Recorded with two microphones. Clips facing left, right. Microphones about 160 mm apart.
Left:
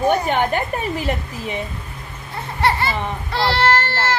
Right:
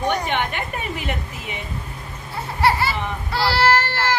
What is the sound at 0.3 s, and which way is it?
A woman's voice, 40° left (ahead or behind).